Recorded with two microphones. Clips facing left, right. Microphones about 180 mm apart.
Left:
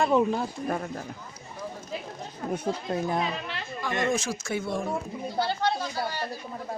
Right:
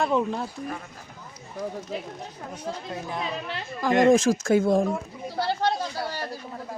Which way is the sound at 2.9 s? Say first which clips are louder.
Left 7 dB; 45° left (ahead or behind).